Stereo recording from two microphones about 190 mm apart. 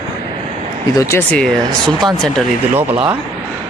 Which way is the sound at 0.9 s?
15° left (ahead or behind).